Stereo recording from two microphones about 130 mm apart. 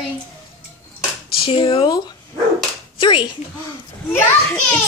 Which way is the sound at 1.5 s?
45° left (ahead or behind).